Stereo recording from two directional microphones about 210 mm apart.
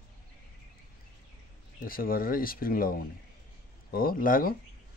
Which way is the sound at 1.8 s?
45° left (ahead or behind).